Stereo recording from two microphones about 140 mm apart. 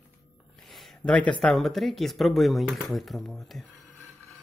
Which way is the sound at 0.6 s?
Centre (ahead or behind).